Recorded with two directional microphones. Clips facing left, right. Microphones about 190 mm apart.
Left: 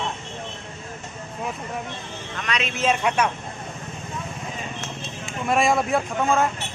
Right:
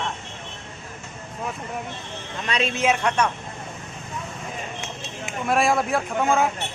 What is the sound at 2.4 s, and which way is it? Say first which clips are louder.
Speech: right 3 dB; 30° right (ahead or behind).